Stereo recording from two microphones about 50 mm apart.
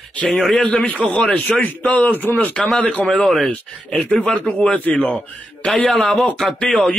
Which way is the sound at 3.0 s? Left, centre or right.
Centre.